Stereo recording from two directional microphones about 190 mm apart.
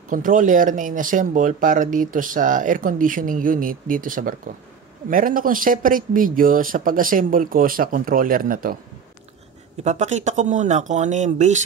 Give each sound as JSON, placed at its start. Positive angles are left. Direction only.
{"t": 0.1, "sound": "speech", "side_deg": -45}
{"t": 9.8, "sound": "speech", "side_deg": -35}